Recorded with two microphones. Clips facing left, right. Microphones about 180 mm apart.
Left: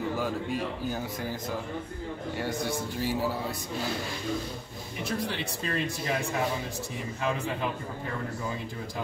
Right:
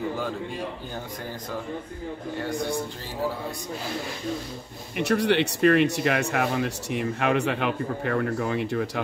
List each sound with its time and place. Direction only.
4.9 s speech: 75° right (ahead or behind)